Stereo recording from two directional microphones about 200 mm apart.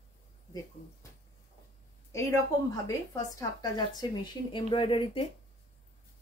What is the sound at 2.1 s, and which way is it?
A woman's voice, 15° left (ahead or behind).